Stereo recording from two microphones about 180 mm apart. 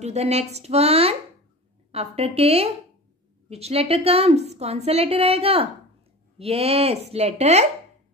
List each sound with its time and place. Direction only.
0.0 s a woman's voice: 35° right (ahead or behind)